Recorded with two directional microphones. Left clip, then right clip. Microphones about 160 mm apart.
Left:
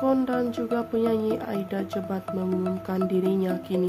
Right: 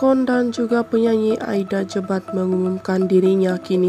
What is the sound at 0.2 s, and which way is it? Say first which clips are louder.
Speech: right 7 dB; 35° right (ahead or behind).